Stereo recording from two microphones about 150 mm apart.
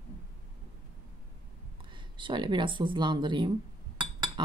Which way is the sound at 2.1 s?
30° right (ahead or behind).